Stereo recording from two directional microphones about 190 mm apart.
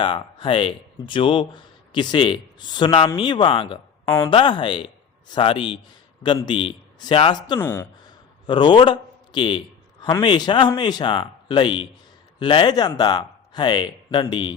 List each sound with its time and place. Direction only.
0.0 s speech: 25° left (ahead or behind)
7.6 s speech: 15° left (ahead or behind)
8.4 s a man's voice: 25° left (ahead or behind)